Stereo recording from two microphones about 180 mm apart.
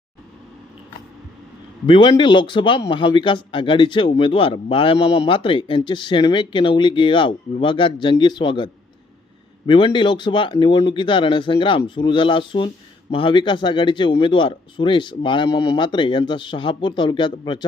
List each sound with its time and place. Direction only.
1.9 s speech: 30° left (ahead or behind)